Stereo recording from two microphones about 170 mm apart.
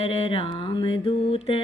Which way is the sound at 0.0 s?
35° left (ahead or behind).